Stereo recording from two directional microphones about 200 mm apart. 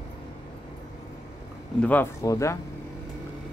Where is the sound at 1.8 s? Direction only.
10° left (ahead or behind).